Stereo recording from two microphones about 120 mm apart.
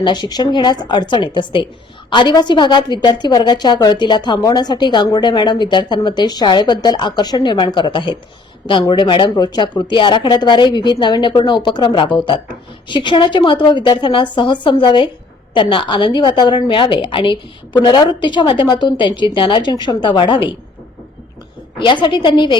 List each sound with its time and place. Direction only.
0.0 s a woman's voice: 40° left (ahead or behind)
21.8 s a woman's voice: 40° left (ahead or behind)